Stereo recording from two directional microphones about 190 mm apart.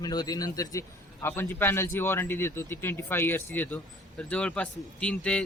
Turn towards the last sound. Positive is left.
turn(degrees=5)  # may be behind; listen again after turning